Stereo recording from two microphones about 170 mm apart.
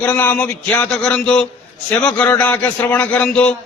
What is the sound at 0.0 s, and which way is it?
A man's voice, 10° left (ahead or behind).